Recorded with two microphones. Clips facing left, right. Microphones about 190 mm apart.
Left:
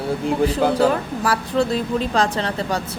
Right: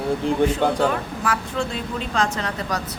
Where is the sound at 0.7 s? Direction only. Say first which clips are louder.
Left 4 dB; 35° left (ahead or behind).